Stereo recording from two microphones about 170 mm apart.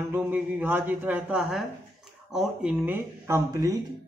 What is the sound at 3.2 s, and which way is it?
Speech, 20° right (ahead or behind).